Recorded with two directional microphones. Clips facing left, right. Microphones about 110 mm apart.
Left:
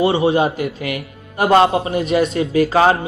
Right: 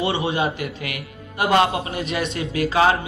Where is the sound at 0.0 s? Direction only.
30° left (ahead or behind).